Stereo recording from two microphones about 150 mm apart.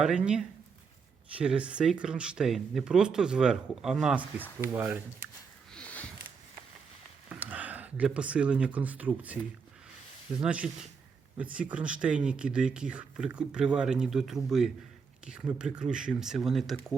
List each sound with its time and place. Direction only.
0.0 s speech: 5° right (ahead or behind)
5.7 s a sound: 10° left (ahead or behind)
7.3 s speech: 10° right (ahead or behind)
10.4 s speech: 10° right (ahead or behind)